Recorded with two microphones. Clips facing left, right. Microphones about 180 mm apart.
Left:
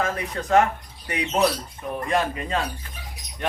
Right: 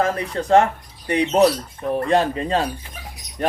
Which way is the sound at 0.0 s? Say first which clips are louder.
Right 5 dB; 35° right (ahead or behind).